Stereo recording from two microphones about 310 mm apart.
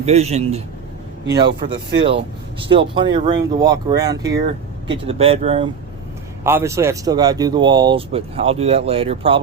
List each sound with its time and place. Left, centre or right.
0.0 s speech: right
1.3 s speech: right
2.6 s speech: centre
4.2 s speech: right
4.9 s speech: centre
6.4 s speech: centre